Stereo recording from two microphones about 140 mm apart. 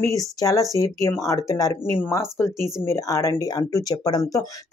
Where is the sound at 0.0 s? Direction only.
25° left (ahead or behind).